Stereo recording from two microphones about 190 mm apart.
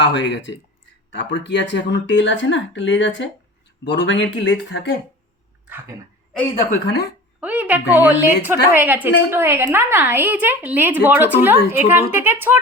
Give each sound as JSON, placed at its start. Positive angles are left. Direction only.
{"t": 0.0, "sound": "speech", "side_deg": 70}
{"t": 6.7, "sound": "speech", "side_deg": 55}
{"t": 7.4, "sound": "a woman's voice", "side_deg": -10}